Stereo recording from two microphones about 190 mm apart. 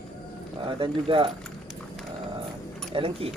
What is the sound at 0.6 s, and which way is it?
Speech, 25° right (ahead or behind).